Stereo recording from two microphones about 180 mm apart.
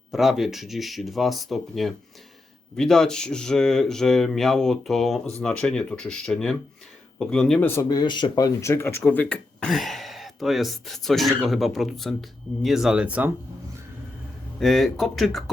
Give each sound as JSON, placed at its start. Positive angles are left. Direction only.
{"t": 0.1, "sound": "speech", "side_deg": 0}
{"t": 7.8, "sound": "speech", "side_deg": 20}
{"t": 14.6, "sound": "speech", "side_deg": 0}